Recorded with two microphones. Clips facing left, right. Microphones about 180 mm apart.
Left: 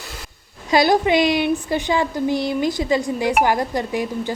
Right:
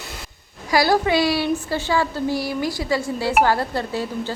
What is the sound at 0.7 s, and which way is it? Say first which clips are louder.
A woman's voice: left 2 dB; 20° left (ahead or behind).